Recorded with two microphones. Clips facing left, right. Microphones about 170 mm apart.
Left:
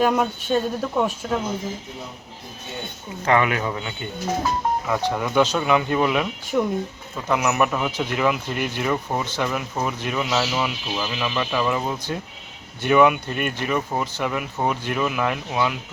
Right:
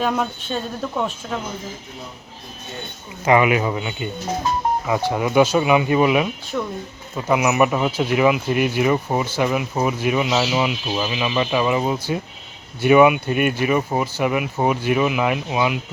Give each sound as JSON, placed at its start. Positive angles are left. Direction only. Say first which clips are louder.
{"t": 0.0, "sound": "speech", "louder": "left 2 dB", "side_deg": 5}
{"t": 3.2, "sound": "speech", "louder": "right 4 dB", "side_deg": -10}
{"t": 6.5, "sound": "speech", "louder": "left 4 dB", "side_deg": 10}
{"t": 7.3, "sound": "speech", "louder": "right 4 dB", "side_deg": -5}